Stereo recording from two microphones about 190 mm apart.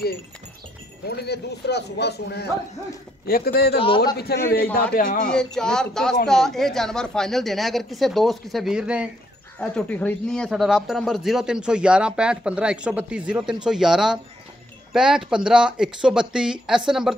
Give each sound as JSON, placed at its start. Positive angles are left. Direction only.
{"t": 1.0, "sound": "speech", "side_deg": 60}
{"t": 5.3, "sound": "speech", "side_deg": 5}